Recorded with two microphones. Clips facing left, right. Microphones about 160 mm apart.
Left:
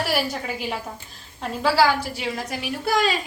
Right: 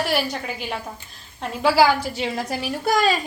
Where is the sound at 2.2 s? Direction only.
35° right (ahead or behind).